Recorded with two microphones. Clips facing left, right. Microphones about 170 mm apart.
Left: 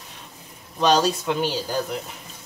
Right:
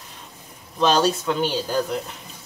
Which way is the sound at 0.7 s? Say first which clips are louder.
Even; 15° left (ahead or behind).